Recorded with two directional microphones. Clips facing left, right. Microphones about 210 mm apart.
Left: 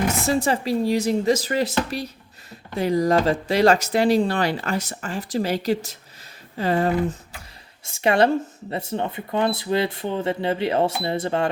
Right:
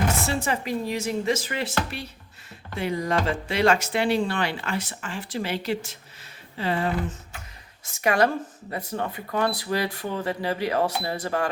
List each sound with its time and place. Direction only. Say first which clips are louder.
0.4 s speech: left 6 dB; 35° left (ahead or behind)
6.6 s a sound: left 5 dB; 45° left (ahead or behind)
7.9 s speech: left 4 dB; 25° left (ahead or behind)